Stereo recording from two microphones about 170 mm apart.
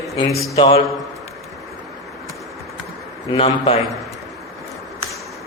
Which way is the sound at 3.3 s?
35° left (ahead or behind).